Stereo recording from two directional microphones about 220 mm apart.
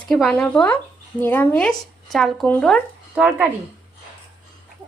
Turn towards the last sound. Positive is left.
turn(degrees=-5)  # may be behind; listen again after turning